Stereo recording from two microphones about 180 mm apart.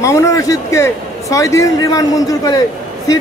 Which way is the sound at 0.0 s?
15° left (ahead or behind).